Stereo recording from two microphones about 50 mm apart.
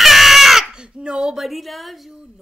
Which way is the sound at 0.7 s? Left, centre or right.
Centre.